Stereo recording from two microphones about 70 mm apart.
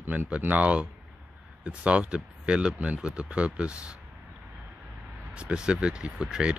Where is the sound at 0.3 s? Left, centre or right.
Centre.